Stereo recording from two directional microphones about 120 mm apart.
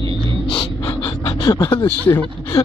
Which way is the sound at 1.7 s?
20° left (ahead or behind).